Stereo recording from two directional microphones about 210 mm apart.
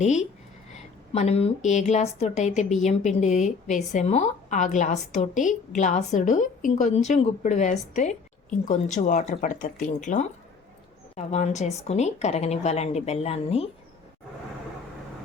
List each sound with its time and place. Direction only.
0.0 s a woman's voice: 35° left (ahead or behind)